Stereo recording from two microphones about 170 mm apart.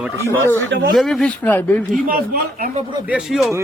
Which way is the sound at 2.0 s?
55° right (ahead or behind).